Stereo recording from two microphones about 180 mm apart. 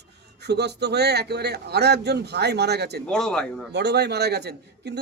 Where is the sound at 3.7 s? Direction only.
70° right (ahead or behind).